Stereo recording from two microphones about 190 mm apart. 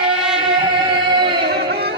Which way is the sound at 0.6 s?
25° right (ahead or behind).